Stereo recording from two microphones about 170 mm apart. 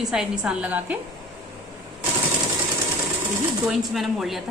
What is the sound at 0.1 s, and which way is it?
Speech, 5° right (ahead or behind).